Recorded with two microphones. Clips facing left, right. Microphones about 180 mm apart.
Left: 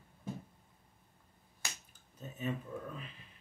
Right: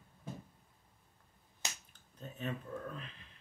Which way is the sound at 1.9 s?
5° left (ahead or behind).